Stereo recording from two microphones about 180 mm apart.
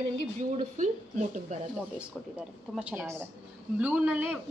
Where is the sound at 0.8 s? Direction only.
45° right (ahead or behind).